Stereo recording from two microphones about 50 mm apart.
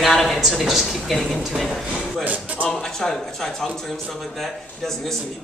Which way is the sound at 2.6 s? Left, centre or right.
Centre.